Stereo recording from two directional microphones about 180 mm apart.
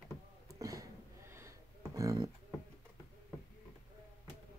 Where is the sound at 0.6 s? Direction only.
20° right (ahead or behind).